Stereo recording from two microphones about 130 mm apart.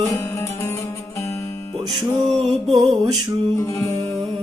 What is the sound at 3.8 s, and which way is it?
Music, 25° left (ahead or behind).